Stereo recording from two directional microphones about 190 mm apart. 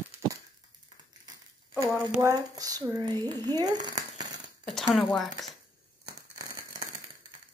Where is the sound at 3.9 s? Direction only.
20° right (ahead or behind).